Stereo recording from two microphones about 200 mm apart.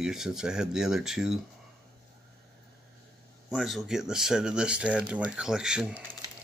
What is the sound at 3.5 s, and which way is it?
Speech, centre (ahead or behind).